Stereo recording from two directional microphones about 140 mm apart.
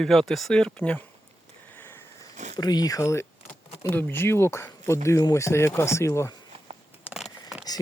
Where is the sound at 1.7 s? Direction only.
15° left (ahead or behind).